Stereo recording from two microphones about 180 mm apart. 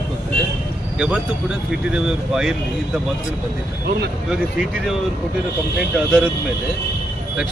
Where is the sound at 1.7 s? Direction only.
5° right (ahead or behind).